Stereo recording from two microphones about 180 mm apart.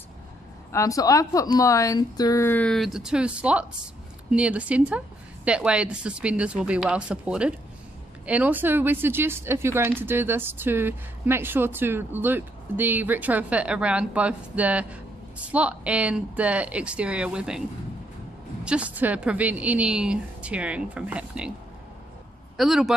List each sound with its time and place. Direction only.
0.7 s a woman's voice: 15° left (ahead or behind); by 21.5 s 5° right (ahead or behind)
22.6 s speech: centre (ahead or behind)